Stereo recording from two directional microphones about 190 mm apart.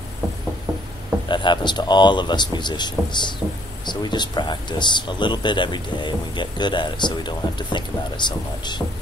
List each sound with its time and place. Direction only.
1.3 s speech: 25° left (ahead or behind)